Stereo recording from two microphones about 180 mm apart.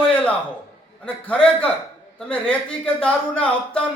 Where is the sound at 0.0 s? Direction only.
5° left (ahead or behind).